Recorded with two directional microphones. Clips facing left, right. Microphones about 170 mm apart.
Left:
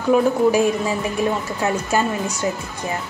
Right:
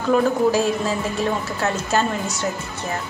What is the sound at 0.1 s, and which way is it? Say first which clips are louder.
Speech: left 2 dB; 15° left (ahead or behind).